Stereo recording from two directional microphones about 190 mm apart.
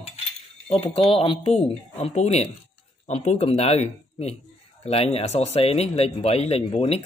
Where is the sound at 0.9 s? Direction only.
30° left (ahead or behind).